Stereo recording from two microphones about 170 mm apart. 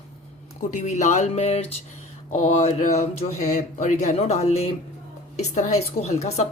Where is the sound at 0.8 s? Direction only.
45° left (ahead or behind).